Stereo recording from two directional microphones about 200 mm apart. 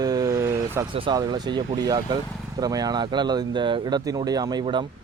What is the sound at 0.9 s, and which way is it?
Speech, 25° right (ahead or behind).